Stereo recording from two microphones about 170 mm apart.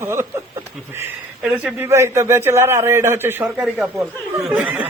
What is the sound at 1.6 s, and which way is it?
A man's voice, 15° right (ahead or behind).